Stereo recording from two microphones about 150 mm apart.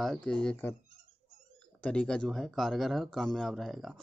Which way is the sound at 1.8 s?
5° left (ahead or behind).